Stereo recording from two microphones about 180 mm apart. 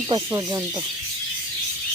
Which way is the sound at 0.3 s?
20° right (ahead or behind).